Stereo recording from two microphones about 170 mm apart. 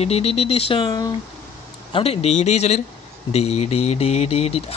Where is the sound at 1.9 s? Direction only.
35° left (ahead or behind).